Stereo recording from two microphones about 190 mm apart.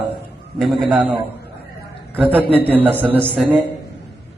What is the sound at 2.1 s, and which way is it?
A man's voice, 10° right (ahead or behind).